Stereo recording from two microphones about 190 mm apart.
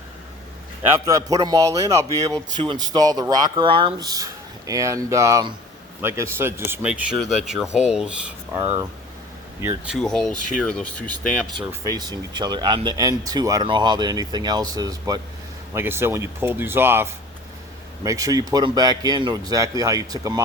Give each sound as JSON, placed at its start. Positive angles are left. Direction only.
{"t": 0.8, "sound": "speech", "side_deg": -15}
{"t": 9.6, "sound": "speech", "side_deg": -10}
{"t": 11.9, "sound": "speech", "side_deg": -20}